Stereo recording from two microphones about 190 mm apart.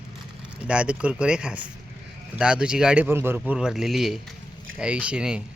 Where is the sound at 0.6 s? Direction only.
5° right (ahead or behind).